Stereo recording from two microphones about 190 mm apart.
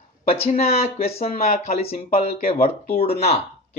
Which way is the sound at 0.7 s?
30° left (ahead or behind).